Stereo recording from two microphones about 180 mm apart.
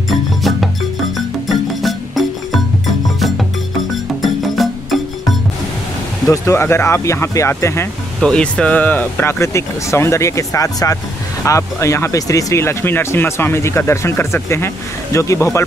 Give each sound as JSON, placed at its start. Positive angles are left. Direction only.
{"t": 0.1, "sound": "music", "side_deg": 0}
{"t": 6.2, "sound": "speech", "side_deg": 15}
{"t": 8.2, "sound": "speech", "side_deg": 5}